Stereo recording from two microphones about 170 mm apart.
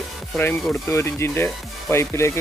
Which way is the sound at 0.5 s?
Centre (ahead or behind).